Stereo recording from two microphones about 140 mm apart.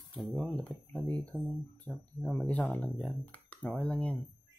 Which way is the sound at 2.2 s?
10° left (ahead or behind).